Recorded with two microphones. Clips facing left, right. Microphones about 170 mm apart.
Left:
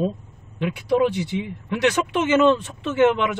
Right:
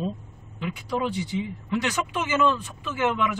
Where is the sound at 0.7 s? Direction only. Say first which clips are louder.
Left 8 dB; 70° left (ahead or behind).